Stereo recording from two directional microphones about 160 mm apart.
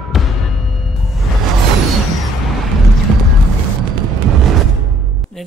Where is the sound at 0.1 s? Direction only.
Centre (ahead or behind).